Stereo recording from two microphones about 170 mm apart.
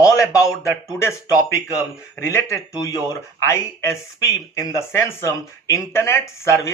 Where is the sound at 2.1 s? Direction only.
15° left (ahead or behind).